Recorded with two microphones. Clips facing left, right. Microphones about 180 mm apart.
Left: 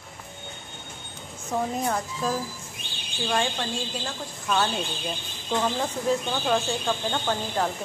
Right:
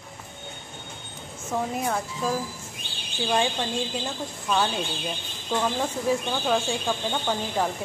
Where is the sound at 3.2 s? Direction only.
15° right (ahead or behind).